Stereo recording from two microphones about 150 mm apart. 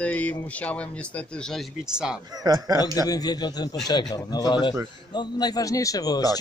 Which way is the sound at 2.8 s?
25° left (ahead or behind).